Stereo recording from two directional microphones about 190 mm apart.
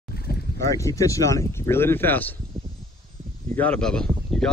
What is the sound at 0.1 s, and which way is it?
Boat, 55° left (ahead or behind).